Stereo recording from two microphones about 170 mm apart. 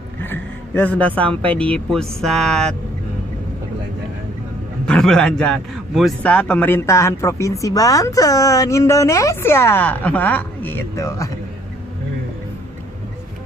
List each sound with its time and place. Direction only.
0.2 s a man's voice: 10° left (ahead or behind)
4.8 s a man's voice: 5° left (ahead or behind)